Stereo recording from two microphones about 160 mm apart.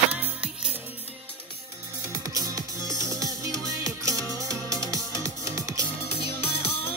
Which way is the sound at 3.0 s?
20° right (ahead or behind).